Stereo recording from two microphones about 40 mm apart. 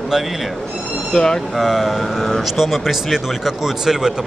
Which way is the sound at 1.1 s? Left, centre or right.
Centre.